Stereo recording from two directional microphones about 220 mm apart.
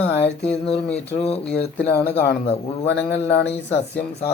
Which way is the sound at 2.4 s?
25° left (ahead or behind).